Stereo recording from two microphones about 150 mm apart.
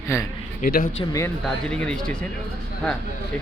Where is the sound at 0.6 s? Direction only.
65° left (ahead or behind).